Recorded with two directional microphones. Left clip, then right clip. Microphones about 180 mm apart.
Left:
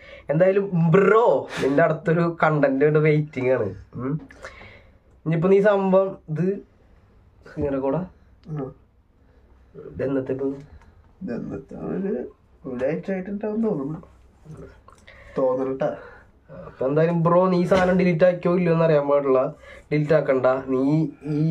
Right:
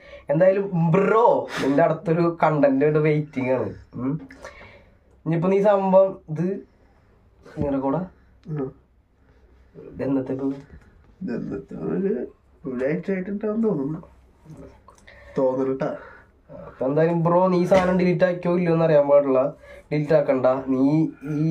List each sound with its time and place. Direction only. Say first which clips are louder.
0.0 s a man's voice: right 1 dB; 15° left (ahead or behind)
8.5 s speech: right 2 dB; 20° right (ahead or behind)
9.9 s a man's voice: left 1 dB; 20° left (ahead or behind)
11.2 s speech: right 1 dB; 15° right (ahead or behind)
15.3 s speech: even; 20° right (ahead or behind)
16.7 s a man's voice: even; 15° left (ahead or behind)